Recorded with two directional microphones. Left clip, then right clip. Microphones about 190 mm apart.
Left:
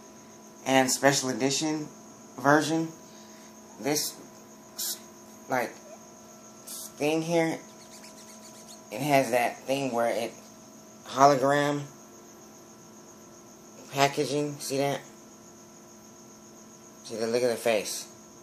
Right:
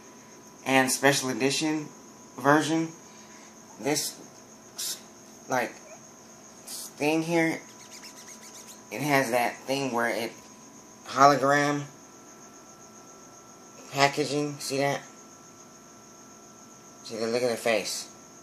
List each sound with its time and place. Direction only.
0.7 s speech: 5° right (ahead or behind)
7.0 s speech: 5° right (ahead or behind)
8.9 s speech: 5° right (ahead or behind)
13.9 s speech: centre (ahead or behind)
17.0 s speech: centre (ahead or behind)